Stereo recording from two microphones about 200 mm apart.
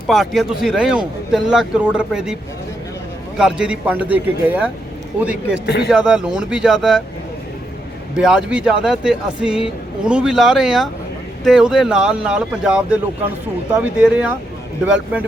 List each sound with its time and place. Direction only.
0.1 s a man's voice: centre (ahead or behind)
5.6 s speech: 55° left (ahead or behind)
5.9 s a man's voice: 5° right (ahead or behind)
8.1 s a man's voice: 5° right (ahead or behind)